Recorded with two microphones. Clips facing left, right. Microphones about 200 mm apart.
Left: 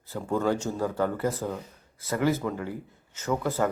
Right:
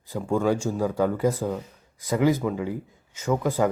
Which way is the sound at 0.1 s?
10° right (ahead or behind).